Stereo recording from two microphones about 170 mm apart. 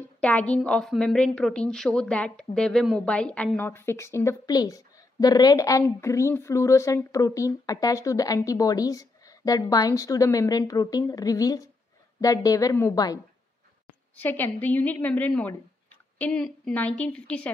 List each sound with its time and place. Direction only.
0.2 s a woman's voice: 10° left (ahead or behind)
14.1 s a woman's voice: 10° left (ahead or behind)